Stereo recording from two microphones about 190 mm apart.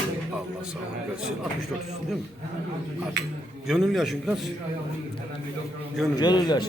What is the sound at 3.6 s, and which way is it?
Speech, centre (ahead or behind).